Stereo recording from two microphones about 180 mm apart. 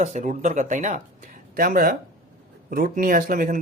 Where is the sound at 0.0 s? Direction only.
40° right (ahead or behind).